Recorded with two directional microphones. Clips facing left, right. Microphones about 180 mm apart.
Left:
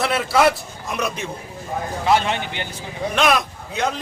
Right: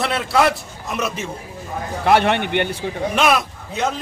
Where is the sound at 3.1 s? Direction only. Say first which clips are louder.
Even; 5° right (ahead or behind).